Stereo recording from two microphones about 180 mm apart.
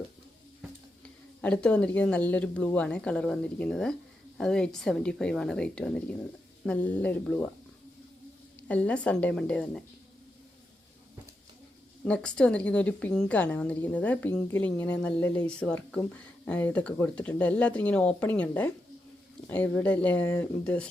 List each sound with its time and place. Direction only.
1.4 s a woman's voice: 5° left (ahead or behind)
8.6 s a woman's voice: 5° left (ahead or behind)
12.0 s a woman's voice: 5° left (ahead or behind)